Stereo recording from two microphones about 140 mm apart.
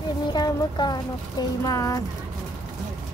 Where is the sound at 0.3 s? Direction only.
30° left (ahead or behind).